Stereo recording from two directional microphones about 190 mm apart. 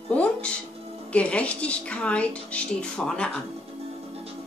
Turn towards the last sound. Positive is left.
turn(degrees=5)  # may be behind; listen again after turning